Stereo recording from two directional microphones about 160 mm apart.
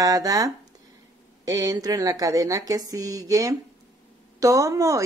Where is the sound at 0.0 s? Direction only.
20° right (ahead or behind).